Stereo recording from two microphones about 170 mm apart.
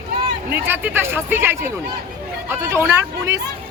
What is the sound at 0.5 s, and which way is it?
Speech, 10° right (ahead or behind).